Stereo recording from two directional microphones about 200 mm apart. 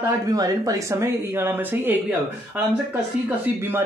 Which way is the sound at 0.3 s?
15° right (ahead or behind).